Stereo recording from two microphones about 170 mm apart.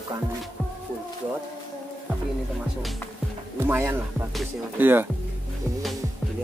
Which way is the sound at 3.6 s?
15° right (ahead or behind).